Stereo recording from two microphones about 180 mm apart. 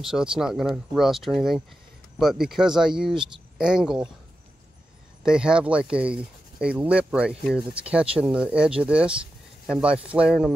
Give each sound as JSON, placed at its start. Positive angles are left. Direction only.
{"t": 0.0, "sound": "speech", "side_deg": -5}
{"t": 5.2, "sound": "speech", "side_deg": -5}